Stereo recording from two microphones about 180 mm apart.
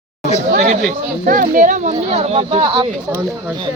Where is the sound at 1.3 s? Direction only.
50° right (ahead or behind); by 2.9 s 30° right (ahead or behind).